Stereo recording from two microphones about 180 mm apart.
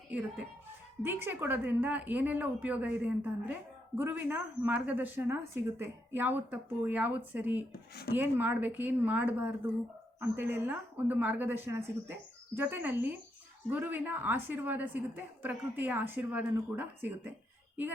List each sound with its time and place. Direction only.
0.1 s a woman's voice: 10° right (ahead or behind)
7.7 s speech: 60° left (ahead or behind)
8.1 s a woman's voice: 10° right (ahead or behind)